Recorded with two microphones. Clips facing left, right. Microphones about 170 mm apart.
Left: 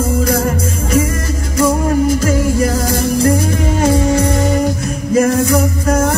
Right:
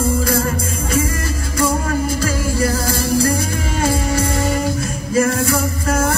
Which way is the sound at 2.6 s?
20° left (ahead or behind).